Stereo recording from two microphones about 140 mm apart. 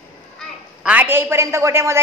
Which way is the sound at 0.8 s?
10° right (ahead or behind).